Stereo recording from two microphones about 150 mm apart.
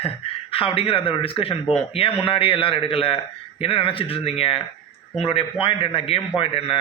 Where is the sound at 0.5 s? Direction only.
40° left (ahead or behind).